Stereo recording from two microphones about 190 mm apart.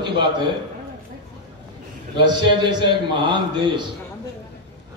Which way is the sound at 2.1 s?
25° right (ahead or behind).